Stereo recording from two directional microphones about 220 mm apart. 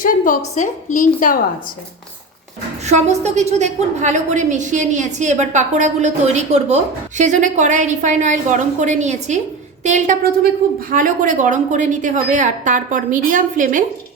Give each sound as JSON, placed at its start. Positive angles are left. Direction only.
{"t": 0.0, "sound": "a woman's voice", "side_deg": 35}
{"t": 2.8, "sound": "a woman's voice", "side_deg": -30}